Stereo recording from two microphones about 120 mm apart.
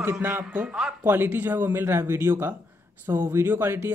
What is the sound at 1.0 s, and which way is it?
Speech, 15° right (ahead or behind).